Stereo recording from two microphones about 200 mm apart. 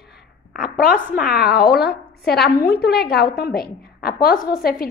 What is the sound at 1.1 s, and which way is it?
A woman's voice, 50° left (ahead or behind).